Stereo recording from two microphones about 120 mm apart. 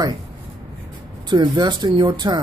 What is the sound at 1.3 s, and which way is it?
Speech, 40° right (ahead or behind).